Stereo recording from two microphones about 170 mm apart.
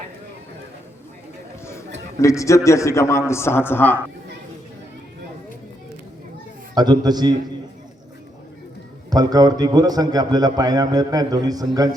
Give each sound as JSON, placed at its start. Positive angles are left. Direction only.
{"t": 2.1, "sound": "a man's voice", "side_deg": 20}
{"t": 6.7, "sound": "a man's voice", "side_deg": -25}
{"t": 9.0, "sound": "a man's voice", "side_deg": -20}